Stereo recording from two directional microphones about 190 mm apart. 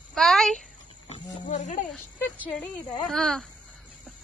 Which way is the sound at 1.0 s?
35° left (ahead or behind).